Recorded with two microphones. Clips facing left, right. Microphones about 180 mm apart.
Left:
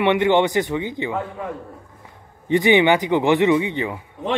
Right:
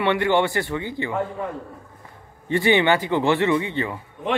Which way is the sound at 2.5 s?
15° left (ahead or behind).